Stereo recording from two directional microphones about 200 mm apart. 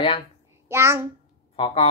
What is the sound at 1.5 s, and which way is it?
Speech, 30° left (ahead or behind).